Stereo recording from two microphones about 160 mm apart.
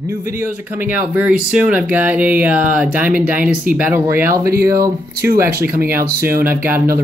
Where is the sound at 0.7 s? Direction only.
10° right (ahead or behind).